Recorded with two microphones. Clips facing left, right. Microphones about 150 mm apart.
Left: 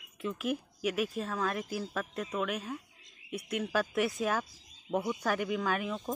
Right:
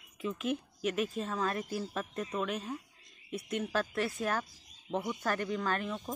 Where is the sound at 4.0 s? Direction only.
15° left (ahead or behind).